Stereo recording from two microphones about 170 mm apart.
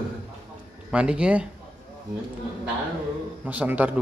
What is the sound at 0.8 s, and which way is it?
Speech, 5° right (ahead or behind).